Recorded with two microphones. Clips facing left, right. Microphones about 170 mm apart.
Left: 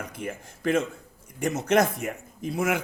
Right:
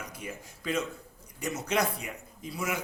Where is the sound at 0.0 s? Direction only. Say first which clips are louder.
Left 6 dB; 55° left (ahead or behind).